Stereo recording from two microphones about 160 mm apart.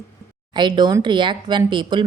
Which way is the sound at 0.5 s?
30° right (ahead or behind).